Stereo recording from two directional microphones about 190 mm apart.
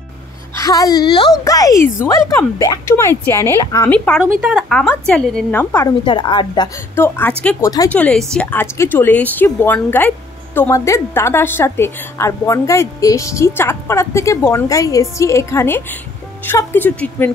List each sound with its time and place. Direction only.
0.6 s a woman's voice: 20° left (ahead or behind)
4.4 s a woman's voice: 5° right (ahead or behind); by 5.9 s 15° left (ahead or behind)
6.0 s a woman's voice: 25° left (ahead or behind)
7.2 s speech: 10° left (ahead or behind)